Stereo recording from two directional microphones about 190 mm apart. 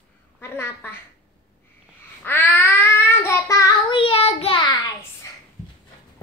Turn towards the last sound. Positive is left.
turn(degrees=20)  # may be behind; listen again after turning